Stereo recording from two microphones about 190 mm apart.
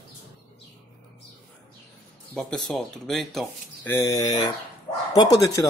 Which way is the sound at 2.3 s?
Centre (ahead or behind).